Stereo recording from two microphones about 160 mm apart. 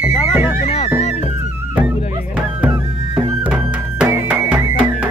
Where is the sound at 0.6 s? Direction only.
35° left (ahead or behind).